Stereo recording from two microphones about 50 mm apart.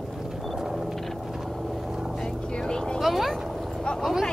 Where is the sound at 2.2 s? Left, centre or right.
Centre.